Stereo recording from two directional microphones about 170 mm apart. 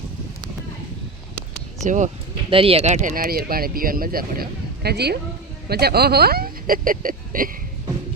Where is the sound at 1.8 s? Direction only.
45° right (ahead or behind).